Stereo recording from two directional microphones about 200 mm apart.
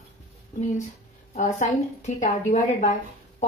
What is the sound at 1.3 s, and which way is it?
Speech, 40° left (ahead or behind).